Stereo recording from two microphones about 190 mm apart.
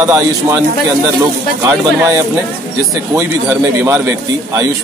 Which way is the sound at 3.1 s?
15° right (ahead or behind).